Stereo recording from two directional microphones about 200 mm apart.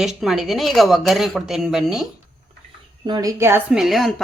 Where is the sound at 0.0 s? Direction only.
Centre (ahead or behind).